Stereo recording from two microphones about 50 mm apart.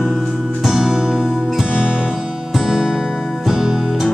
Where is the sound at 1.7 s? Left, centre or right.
Centre.